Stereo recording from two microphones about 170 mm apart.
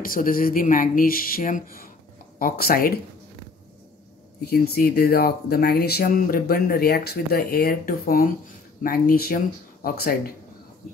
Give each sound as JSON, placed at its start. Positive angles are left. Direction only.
{"t": 0.0, "sound": "speech", "side_deg": 55}
{"t": 4.4, "sound": "speech", "side_deg": 65}